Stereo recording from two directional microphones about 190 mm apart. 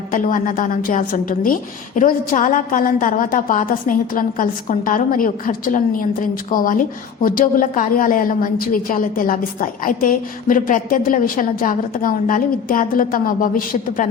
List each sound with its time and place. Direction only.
0.1 s a woman's voice: 45° left (ahead or behind)